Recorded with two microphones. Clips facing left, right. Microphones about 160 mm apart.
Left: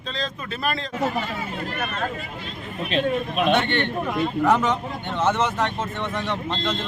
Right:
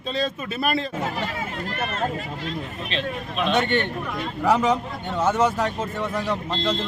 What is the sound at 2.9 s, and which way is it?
Speech, 50° left (ahead or behind).